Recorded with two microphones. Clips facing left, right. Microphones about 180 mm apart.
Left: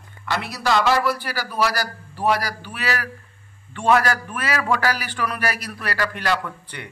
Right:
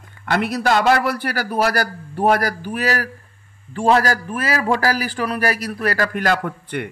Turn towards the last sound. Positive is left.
turn(degrees=-50)  # may be behind; listen again after turning